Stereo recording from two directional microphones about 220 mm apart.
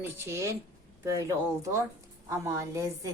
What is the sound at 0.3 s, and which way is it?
A woman's voice, 15° right (ahead or behind).